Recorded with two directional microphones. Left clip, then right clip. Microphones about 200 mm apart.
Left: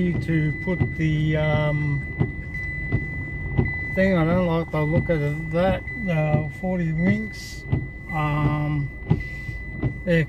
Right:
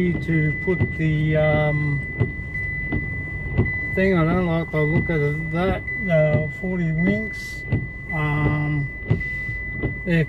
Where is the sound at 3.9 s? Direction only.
20° left (ahead or behind).